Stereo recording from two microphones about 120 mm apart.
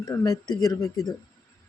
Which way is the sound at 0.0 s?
30° left (ahead or behind).